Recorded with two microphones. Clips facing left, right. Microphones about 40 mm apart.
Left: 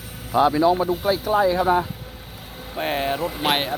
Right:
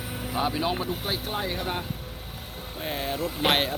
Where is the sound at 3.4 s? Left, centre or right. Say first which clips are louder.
Even; centre.